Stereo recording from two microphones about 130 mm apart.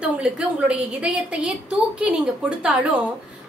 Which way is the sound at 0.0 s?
5° right (ahead or behind).